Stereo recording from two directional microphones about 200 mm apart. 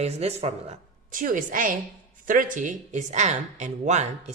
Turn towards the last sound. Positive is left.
turn(degrees=-35)  # may be behind; listen again after turning